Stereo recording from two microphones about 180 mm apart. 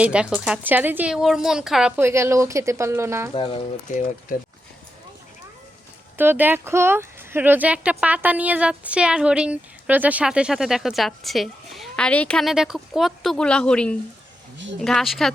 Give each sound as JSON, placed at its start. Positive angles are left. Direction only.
{"t": 0.0, "sound": "speech", "side_deg": -5}
{"t": 2.0, "sound": "speech", "side_deg": -15}
{"t": 3.3, "sound": "speech", "side_deg": 30}
{"t": 3.8, "sound": "speech", "side_deg": 45}
{"t": 6.1, "sound": "speech", "side_deg": -10}